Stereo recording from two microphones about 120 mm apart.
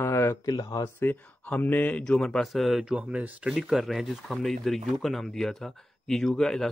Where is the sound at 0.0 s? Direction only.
20° left (ahead or behind).